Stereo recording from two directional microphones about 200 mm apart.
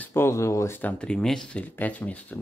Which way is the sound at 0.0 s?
10° left (ahead or behind).